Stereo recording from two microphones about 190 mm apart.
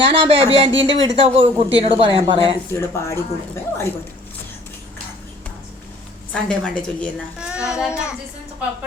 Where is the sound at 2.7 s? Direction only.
15° left (ahead or behind).